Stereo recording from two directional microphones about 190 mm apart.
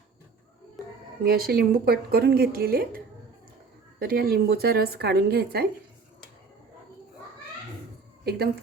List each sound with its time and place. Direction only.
1.2 s a woman's voice: 50° right (ahead or behind)
4.0 s speech: 55° right (ahead or behind)
8.2 s speech: 55° right (ahead or behind)